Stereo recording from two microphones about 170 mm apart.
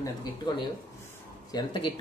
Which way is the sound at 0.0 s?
25° left (ahead or behind).